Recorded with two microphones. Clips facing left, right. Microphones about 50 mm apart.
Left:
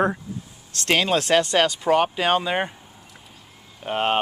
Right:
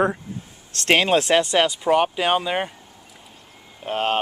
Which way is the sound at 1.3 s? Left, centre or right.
Centre.